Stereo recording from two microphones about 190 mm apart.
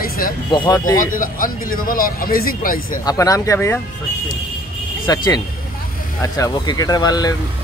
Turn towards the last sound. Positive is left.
turn(degrees=20)  # may be behind; listen again after turning